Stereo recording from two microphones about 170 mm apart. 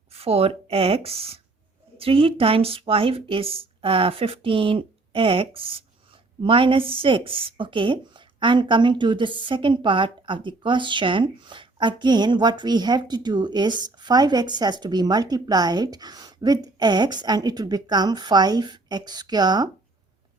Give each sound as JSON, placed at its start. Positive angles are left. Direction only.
{"t": 0.1, "sound": "a woman's voice", "side_deg": -35}